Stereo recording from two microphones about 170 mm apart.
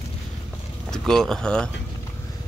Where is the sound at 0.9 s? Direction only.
5° left (ahead or behind).